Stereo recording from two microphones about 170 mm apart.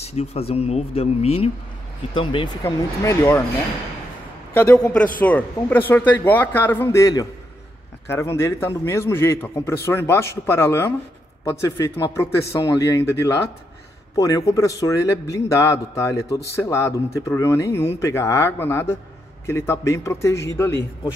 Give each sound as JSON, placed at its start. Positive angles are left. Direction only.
{"t": 0.0, "sound": "speech", "side_deg": 40}
{"t": 2.6, "sound": "a man's voice", "side_deg": 15}
{"t": 4.6, "sound": "a man's voice", "side_deg": 10}